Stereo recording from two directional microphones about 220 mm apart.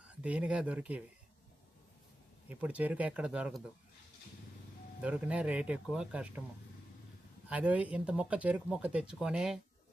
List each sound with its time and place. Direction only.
0.2 s speech: 5° right (ahead or behind)
2.5 s speech: 5° right (ahead or behind)
5.0 s speech: 5° right (ahead or behind)
7.5 s speech: 5° right (ahead or behind)